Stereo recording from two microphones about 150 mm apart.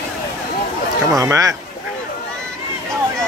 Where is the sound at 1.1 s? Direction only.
20° right (ahead or behind).